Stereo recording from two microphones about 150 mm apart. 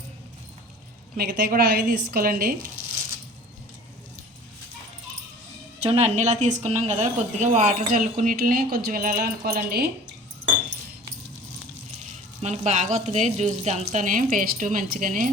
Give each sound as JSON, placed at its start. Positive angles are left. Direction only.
{"t": 1.1, "sound": "speech", "side_deg": -90}
{"t": 5.8, "sound": "a woman's voice", "side_deg": -40}
{"t": 12.4, "sound": "a woman's voice", "side_deg": -50}